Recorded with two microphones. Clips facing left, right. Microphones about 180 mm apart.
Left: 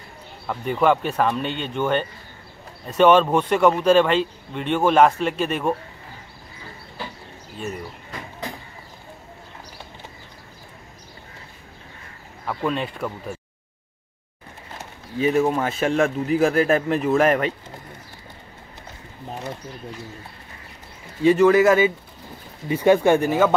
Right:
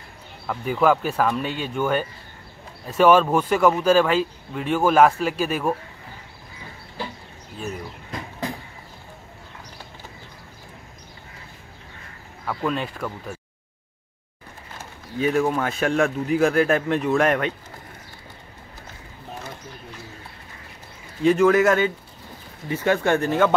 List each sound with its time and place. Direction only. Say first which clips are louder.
0.5 s speech: even; centre (ahead or behind)
12.4 s speech: left 1 dB; centre (ahead or behind)
15.1 s speech: left 2 dB; centre (ahead or behind)
21.2 s speech: left 2 dB; centre (ahead or behind)
22.7 s speech: left 5 dB; 15° left (ahead or behind)